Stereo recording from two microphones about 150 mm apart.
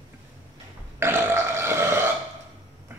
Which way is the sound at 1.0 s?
15° right (ahead or behind).